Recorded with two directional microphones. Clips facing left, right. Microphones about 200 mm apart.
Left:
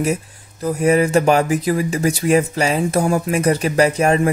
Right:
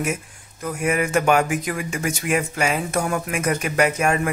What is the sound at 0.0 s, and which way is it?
Speech, 35° left (ahead or behind).